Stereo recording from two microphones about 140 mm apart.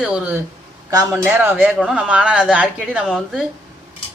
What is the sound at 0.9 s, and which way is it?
Speech, 25° right (ahead or behind).